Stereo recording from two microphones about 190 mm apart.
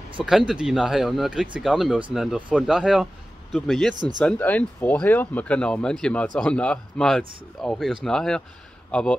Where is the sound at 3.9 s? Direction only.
20° right (ahead or behind).